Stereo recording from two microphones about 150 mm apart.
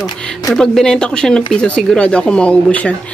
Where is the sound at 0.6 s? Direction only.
5° left (ahead or behind).